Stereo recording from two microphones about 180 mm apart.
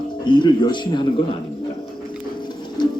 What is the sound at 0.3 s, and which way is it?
Speech, 25° left (ahead or behind).